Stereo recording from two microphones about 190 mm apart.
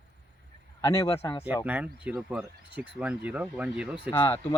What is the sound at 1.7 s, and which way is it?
Speech, 10° right (ahead or behind).